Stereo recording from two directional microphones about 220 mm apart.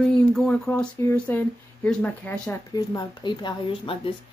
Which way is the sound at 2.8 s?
20° left (ahead or behind).